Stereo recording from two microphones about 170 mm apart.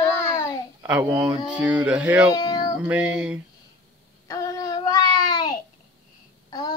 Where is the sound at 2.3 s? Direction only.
25° left (ahead or behind).